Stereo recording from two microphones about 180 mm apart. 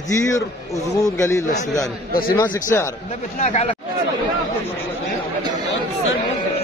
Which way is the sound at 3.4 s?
40° left (ahead or behind).